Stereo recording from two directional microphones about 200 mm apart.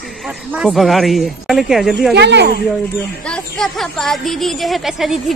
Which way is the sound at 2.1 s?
60° right (ahead or behind).